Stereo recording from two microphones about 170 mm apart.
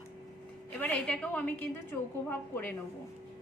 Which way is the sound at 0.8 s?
5° left (ahead or behind).